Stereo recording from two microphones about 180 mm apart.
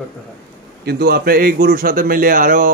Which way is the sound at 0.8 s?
60° right (ahead or behind).